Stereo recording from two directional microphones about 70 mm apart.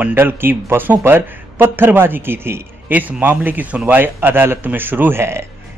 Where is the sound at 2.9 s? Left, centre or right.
Right.